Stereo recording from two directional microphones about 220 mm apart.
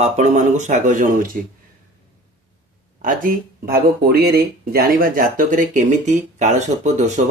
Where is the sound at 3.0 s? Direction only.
40° right (ahead or behind).